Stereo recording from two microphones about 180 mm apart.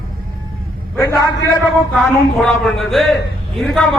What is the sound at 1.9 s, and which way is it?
Speech, 5° left (ahead or behind).